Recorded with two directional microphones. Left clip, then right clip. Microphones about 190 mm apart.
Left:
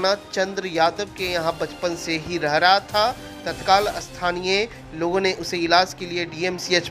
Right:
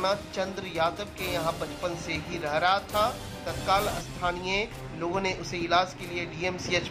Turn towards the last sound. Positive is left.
turn(degrees=25)  # may be behind; listen again after turning